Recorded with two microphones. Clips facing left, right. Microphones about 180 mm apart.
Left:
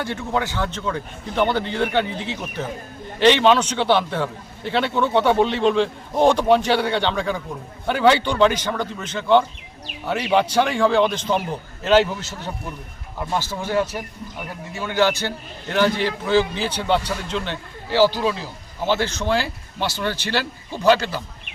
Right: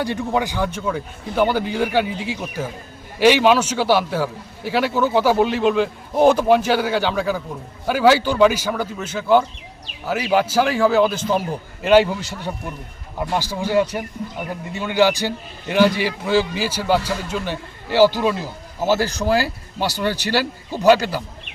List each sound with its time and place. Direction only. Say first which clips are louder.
0.0 s a man's voice: right 3 dB; 15° right (ahead or behind)
14.2 s speech: right 6 dB; 90° right
14.7 s a man's voice: right 3 dB; 15° right (ahead or behind)
18.9 s speech: right 2 dB; 35° right (ahead or behind)
20.3 s a man's voice: right 3 dB; 10° right (ahead or behind)